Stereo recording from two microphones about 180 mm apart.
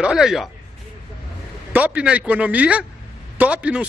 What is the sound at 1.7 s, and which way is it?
Speech, 10° right (ahead or behind).